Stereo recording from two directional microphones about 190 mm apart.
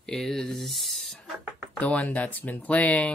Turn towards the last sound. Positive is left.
turn(degrees=10)  # may be behind; listen again after turning